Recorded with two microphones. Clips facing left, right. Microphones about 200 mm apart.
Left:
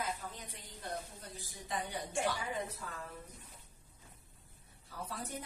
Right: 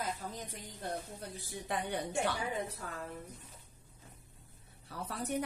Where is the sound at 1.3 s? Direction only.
65° right (ahead or behind).